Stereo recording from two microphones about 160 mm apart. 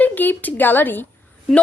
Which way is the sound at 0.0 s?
10° left (ahead or behind).